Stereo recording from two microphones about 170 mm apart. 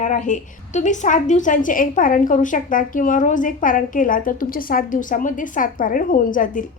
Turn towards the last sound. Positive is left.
turn(degrees=50)  # may be behind; listen again after turning